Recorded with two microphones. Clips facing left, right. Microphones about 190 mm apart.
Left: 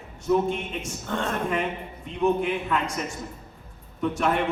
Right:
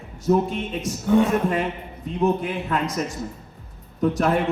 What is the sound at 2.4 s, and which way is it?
Speech, 40° right (ahead or behind).